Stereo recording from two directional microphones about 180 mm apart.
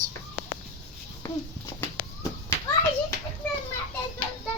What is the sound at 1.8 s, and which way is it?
Children playing, 15° left (ahead or behind).